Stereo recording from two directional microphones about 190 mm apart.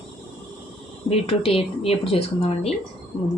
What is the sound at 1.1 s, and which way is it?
Speech, 30° left (ahead or behind).